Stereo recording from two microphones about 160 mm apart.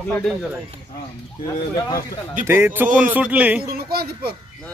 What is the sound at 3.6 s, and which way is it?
Speech, 70° right (ahead or behind).